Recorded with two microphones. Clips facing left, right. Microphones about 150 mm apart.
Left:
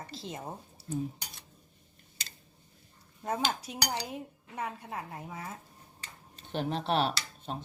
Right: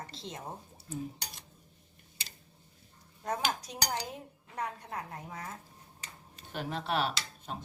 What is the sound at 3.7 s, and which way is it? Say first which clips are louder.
A woman's voice: left 1 dB; 5° left (ahead or behind).